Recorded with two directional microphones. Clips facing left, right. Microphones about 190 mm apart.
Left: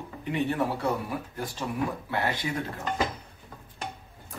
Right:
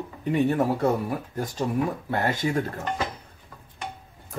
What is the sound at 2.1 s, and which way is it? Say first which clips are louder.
Speech: right 3 dB; 45° right (ahead or behind).